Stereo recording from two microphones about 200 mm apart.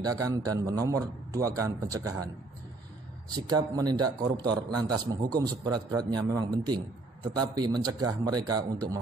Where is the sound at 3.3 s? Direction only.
20° right (ahead or behind).